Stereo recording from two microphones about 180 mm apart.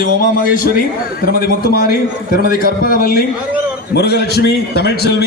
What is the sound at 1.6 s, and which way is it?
A man's voice, 55° left (ahead or behind).